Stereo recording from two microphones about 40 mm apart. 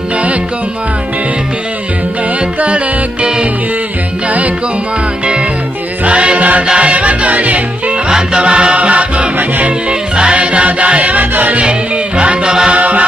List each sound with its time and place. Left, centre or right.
2.6 s music: right
6.0 s choir: right
6.7 s music: right
8.1 s music: right
12.2 s music: right